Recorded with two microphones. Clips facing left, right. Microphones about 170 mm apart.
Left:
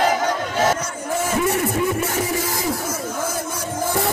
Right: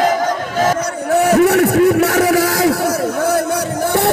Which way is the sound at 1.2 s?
70° right (ahead or behind).